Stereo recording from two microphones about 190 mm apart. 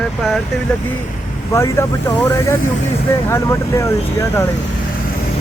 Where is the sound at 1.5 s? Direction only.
15° left (ahead or behind).